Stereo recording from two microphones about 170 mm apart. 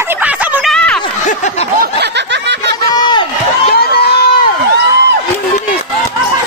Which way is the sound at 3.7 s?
65° left (ahead or behind).